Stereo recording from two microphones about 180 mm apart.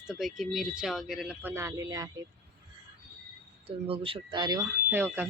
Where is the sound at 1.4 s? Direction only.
15° right (ahead or behind).